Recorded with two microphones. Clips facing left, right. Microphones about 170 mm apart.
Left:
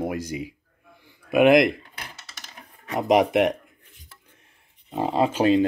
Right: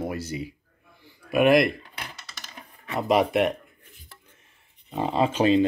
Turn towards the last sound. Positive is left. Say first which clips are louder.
# left 1 dB
turn(degrees=10)  # may be behind; listen again after turning